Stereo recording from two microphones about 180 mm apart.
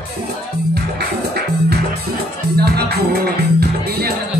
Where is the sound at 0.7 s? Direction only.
65° right (ahead or behind).